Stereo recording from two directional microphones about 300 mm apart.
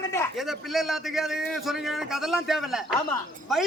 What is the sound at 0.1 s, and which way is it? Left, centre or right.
A man's voice, centre.